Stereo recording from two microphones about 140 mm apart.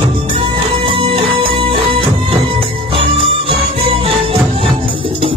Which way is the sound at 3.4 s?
40° right (ahead or behind).